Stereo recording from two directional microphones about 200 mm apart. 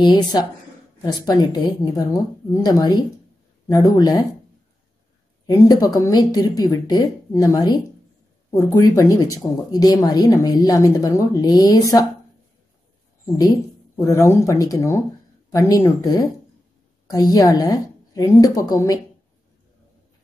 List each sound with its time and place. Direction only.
0.0 s speech: 20° left (ahead or behind)
5.5 s speech: 20° left (ahead or behind)
13.9 s a woman's voice: 15° left (ahead or behind)
17.1 s a woman's voice: 20° left (ahead or behind)